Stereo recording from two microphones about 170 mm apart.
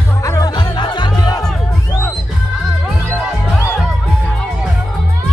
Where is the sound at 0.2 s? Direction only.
20° left (ahead or behind).